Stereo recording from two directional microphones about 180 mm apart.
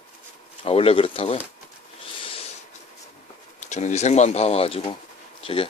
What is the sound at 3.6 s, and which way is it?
Speech, 40° left (ahead or behind).